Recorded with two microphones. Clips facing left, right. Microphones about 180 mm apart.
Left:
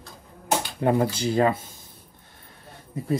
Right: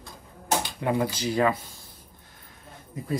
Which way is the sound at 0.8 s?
40° left (ahead or behind).